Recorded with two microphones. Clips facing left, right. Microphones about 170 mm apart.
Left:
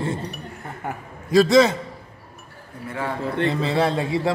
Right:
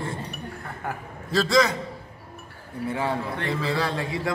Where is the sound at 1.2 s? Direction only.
15° left (ahead or behind).